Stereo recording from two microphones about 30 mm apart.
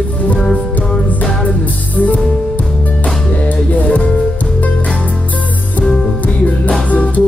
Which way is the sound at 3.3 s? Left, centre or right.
Left.